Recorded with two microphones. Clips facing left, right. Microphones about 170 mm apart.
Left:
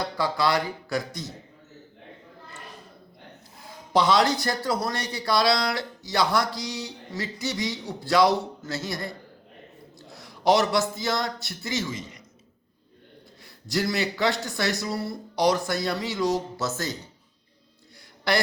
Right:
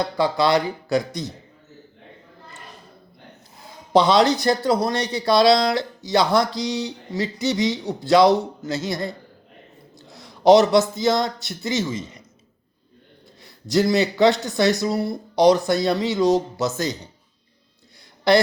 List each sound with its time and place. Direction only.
0.0 s speech: 20° right (ahead or behind)
3.9 s speech: 25° right (ahead or behind)
10.2 s speech: 20° right (ahead or behind)
13.4 s speech: 20° right (ahead or behind)
18.3 s speech: 20° right (ahead or behind)